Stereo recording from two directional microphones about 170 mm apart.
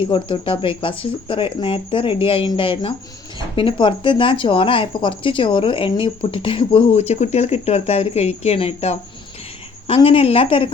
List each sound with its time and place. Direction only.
0.0 s speech: 30° left (ahead or behind)